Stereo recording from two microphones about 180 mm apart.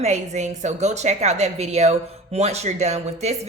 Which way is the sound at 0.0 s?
40° right (ahead or behind).